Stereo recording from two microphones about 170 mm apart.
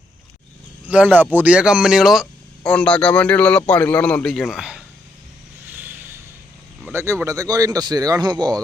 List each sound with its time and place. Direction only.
0.9 s a man's voice: 10° right (ahead or behind)
5.6 s vehicle: 10° right (ahead or behind)
6.9 s speech: 15° right (ahead or behind)